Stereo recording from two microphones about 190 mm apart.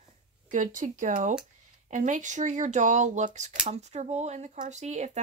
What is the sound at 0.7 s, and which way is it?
Speech, 40° right (ahead or behind).